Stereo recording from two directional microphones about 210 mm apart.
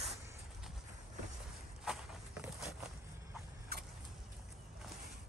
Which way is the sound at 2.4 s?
Centre (ahead or behind).